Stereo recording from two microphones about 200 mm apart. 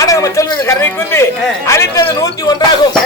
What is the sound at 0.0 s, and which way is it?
A man's voice, 15° left (ahead or behind).